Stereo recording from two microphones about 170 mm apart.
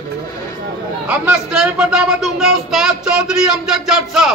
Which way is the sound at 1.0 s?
5° right (ahead or behind).